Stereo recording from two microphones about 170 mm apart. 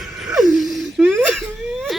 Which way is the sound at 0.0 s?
Centre (ahead or behind).